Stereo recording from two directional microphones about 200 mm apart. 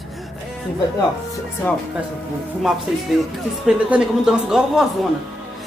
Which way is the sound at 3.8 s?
5° right (ahead or behind).